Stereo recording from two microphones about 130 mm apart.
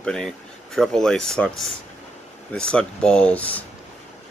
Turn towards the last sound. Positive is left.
turn(degrees=10)  # may be behind; listen again after turning